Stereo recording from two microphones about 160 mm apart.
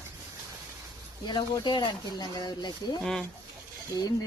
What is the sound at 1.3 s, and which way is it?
Speech, 30° left (ahead or behind).